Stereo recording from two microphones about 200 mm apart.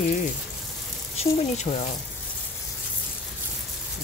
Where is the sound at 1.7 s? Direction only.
30° left (ahead or behind).